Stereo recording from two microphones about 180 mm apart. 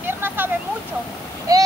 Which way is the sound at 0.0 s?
10° right (ahead or behind).